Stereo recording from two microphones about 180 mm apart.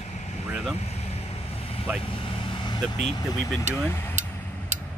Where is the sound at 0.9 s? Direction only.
35° left (ahead or behind).